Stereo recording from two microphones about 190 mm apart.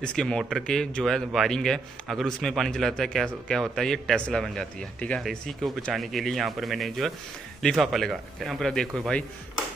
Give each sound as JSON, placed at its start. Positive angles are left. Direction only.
{"t": 0.0, "sound": "a man's voice", "side_deg": 5}